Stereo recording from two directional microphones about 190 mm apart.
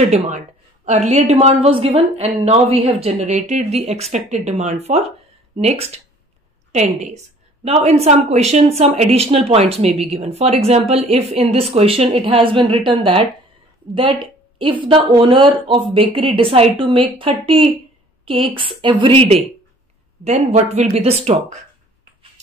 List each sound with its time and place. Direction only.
0.8 s a woman's voice: 35° right (ahead or behind)
14.2 s a woman's voice: 25° right (ahead or behind)